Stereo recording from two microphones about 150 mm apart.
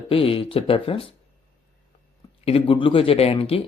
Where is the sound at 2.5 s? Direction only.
35° left (ahead or behind).